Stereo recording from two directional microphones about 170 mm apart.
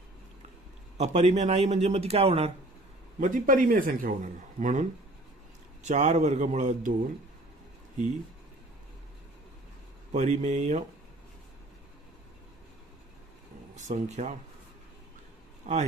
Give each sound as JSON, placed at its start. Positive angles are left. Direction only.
{"t": 0.9, "sound": "speech", "side_deg": -40}
{"t": 3.2, "sound": "speech", "side_deg": -50}
{"t": 10.1, "sound": "speech", "side_deg": -45}
{"t": 13.7, "sound": "speech", "side_deg": -45}
{"t": 15.7, "sound": "a man's voice", "side_deg": -40}